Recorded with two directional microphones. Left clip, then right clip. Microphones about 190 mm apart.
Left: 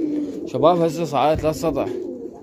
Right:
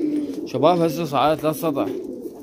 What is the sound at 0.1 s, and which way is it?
Speech, centre (ahead or behind).